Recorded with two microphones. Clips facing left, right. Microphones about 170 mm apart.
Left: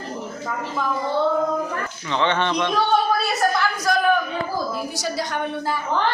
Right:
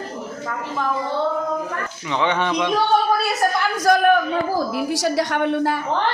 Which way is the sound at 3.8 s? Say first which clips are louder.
Right 5 dB; 55° right (ahead or behind).